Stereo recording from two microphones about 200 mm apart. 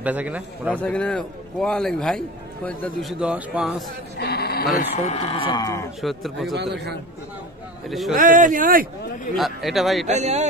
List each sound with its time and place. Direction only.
0.0 s a man's voice: 10° right (ahead or behind)
0.7 s a man's voice: 5° left (ahead or behind)
4.2 s speech: 55° left (ahead or behind)
4.7 s speech: 35° left (ahead or behind); by 5.9 s 15° left (ahead or behind)
5.9 s a man's voice: centre (ahead or behind)
6.5 s speech: 60° right (ahead or behind)
7.9 s a man's voice: centre (ahead or behind)
8.2 s speech: 40° right (ahead or behind)
9.3 s a man's voice: centre (ahead or behind)
10.0 s speech: 35° right (ahead or behind)